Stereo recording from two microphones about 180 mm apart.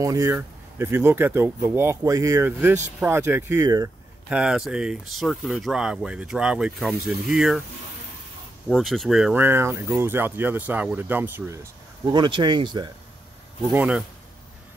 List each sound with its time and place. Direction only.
0.0 s speech: 15° right (ahead or behind)
4.3 s speech: 5° right (ahead or behind)
8.6 s speech: centre (ahead or behind)
12.1 s speech: 25° right (ahead or behind)
13.7 s speech: 5° right (ahead or behind)